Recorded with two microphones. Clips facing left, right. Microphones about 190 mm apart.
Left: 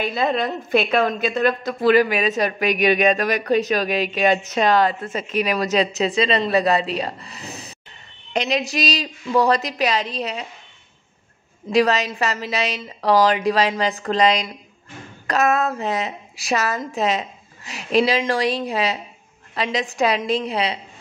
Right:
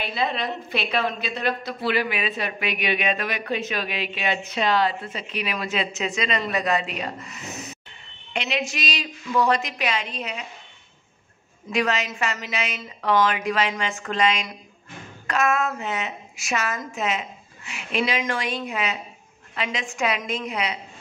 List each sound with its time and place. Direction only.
0.0 s a woman's voice: 45° left (ahead or behind)
11.7 s a woman's voice: 35° left (ahead or behind)